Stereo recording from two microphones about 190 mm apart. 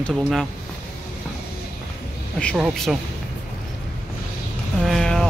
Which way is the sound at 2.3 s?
Centre (ahead or behind).